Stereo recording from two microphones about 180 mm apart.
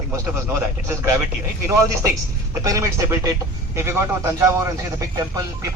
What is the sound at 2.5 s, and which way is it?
Speech, 15° right (ahead or behind).